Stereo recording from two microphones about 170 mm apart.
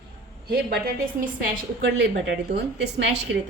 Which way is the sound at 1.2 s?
65° right (ahead or behind).